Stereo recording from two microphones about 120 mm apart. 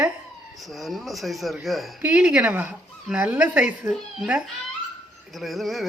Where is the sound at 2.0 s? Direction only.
10° right (ahead or behind).